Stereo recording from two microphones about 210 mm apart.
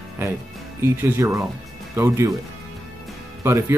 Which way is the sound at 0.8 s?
10° right (ahead or behind).